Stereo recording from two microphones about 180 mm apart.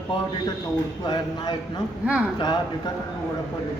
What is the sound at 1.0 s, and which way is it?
Speech, 20° left (ahead or behind).